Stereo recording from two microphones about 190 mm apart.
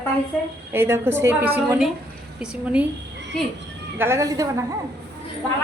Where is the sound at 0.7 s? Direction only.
10° right (ahead or behind).